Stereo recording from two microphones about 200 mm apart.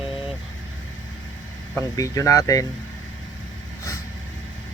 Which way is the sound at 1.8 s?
15° left (ahead or behind).